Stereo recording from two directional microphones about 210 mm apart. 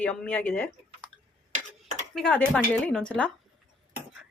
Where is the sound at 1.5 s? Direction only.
35° right (ahead or behind).